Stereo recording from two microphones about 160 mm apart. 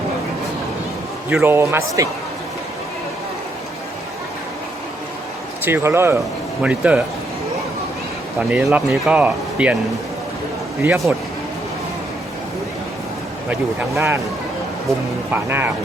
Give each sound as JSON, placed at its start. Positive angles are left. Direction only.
{"t": 1.4, "sound": "speech", "side_deg": -15}
{"t": 5.6, "sound": "speech", "side_deg": -15}
{"t": 8.4, "sound": "speech", "side_deg": -10}
{"t": 10.8, "sound": "speech", "side_deg": 0}
{"t": 13.5, "sound": "speech", "side_deg": -15}
{"t": 15.3, "sound": "speech", "side_deg": -15}